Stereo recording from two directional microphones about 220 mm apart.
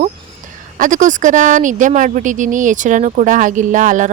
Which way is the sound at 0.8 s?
35° right (ahead or behind).